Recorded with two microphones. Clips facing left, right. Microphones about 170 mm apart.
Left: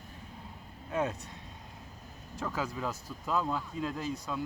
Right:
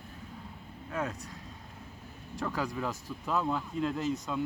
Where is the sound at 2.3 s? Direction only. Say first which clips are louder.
Right 2 dB; 10° left (ahead or behind).